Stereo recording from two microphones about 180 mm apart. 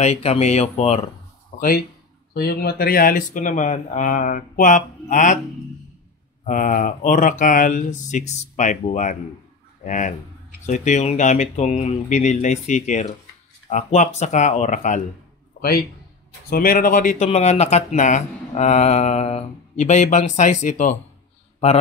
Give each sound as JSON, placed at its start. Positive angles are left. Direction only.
{"t": 0.0, "sound": "speech", "side_deg": 35}
{"t": 1.5, "sound": "a sound", "side_deg": 45}
{"t": 2.3, "sound": "speech", "side_deg": 60}
{"t": 6.4, "sound": "speech", "side_deg": 45}
{"t": 16.3, "sound": "speech", "side_deg": 55}